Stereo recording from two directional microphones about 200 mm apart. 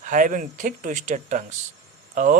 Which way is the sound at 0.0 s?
40° right (ahead or behind).